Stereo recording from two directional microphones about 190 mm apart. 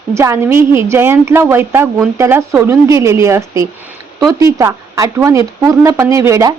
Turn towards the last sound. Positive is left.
turn(degrees=-15)  # may be behind; listen again after turning